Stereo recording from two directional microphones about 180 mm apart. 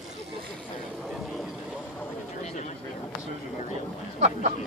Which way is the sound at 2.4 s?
40° left (ahead or behind).